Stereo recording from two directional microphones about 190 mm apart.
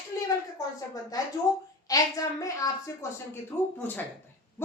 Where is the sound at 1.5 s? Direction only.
20° left (ahead or behind).